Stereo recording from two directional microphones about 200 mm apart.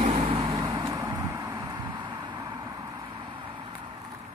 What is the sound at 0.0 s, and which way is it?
Vehicle, 25° right (ahead or behind).